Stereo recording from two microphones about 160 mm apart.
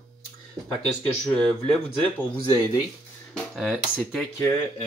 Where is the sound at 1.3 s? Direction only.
5° left (ahead or behind).